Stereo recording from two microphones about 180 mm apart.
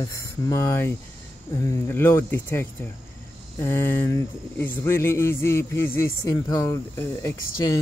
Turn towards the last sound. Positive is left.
turn(degrees=15)  # may be behind; listen again after turning